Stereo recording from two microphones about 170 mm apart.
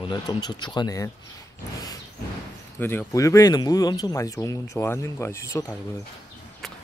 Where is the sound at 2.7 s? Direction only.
10° left (ahead or behind).